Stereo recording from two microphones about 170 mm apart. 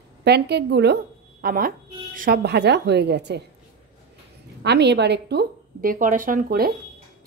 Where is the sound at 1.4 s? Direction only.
55° right (ahead or behind); by 3.4 s 80° right.